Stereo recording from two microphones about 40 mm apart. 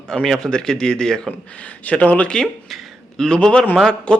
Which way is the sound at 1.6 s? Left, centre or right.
Left.